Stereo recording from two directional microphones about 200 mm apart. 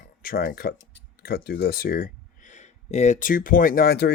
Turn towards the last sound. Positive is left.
turn(degrees=55)  # may be behind; listen again after turning